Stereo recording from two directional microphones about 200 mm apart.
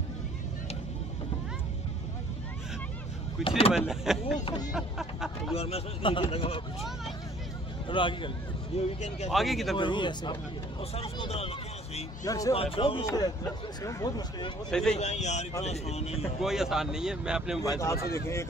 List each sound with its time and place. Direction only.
3.4 s speech: 30° left (ahead or behind)
3.7 s speech: centre (ahead or behind)
5.5 s speech: 30° left (ahead or behind)
7.9 s speech: 25° left (ahead or behind)
9.3 s speech: centre (ahead or behind)
9.8 s speech: 25° left (ahead or behind)
12.3 s speech: 15° left (ahead or behind)
12.5 s speech: 30° left (ahead or behind)
14.7 s speech: 5° left (ahead or behind)
15.0 s speech: 35° left (ahead or behind)
16.2 s speech: centre (ahead or behind)
18.1 s speech: 15° left (ahead or behind)